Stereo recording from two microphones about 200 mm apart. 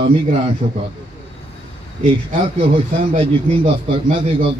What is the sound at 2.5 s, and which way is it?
Speech, 30° right (ahead or behind).